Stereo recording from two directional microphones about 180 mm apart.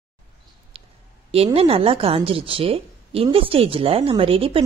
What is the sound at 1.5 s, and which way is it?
A woman's voice, 35° right (ahead or behind).